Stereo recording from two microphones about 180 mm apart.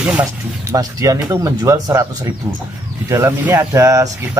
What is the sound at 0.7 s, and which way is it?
Speech, 20° right (ahead or behind).